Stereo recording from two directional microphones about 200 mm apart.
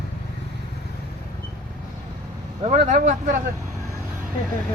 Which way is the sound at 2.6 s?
35° right (ahead or behind).